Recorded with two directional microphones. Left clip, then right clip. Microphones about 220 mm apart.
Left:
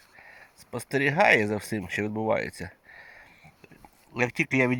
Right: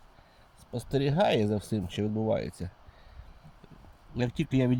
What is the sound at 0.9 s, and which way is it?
Speech, 10° right (ahead or behind).